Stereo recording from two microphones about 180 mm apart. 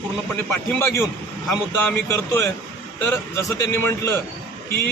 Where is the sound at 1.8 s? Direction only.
15° left (ahead or behind).